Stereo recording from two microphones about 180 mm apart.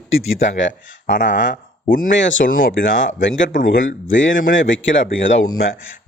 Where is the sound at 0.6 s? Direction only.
90° left.